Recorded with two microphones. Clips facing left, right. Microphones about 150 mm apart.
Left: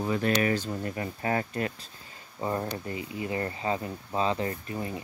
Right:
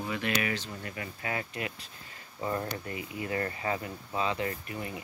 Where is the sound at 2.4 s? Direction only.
25° left (ahead or behind).